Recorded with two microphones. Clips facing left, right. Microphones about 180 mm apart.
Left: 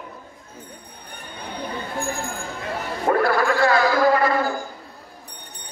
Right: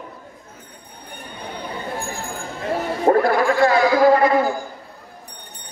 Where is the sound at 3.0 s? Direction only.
20° right (ahead or behind).